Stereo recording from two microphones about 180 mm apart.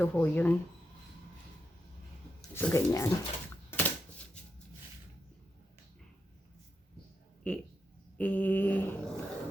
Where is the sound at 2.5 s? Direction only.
15° left (ahead or behind).